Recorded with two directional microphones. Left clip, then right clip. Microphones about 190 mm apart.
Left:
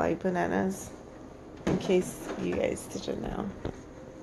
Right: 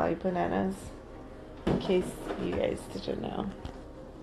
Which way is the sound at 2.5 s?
10° left (ahead or behind).